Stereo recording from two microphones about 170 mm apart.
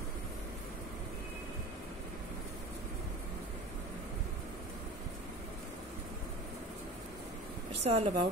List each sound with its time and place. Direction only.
7.8 s speech: 40° right (ahead or behind)